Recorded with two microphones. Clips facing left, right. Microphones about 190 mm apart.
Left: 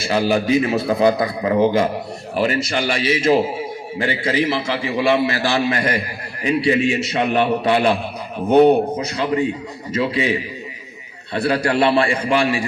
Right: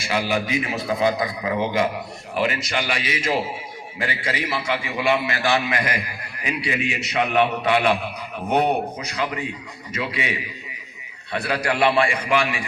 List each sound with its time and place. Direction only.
0.0 s a man's voice: 30° left (ahead or behind)
9.1 s a man's voice: 30° left (ahead or behind)
11.3 s a man's voice: 30° left (ahead or behind)